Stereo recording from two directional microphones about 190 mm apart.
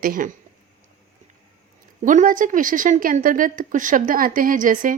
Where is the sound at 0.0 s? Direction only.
45° right (ahead or behind).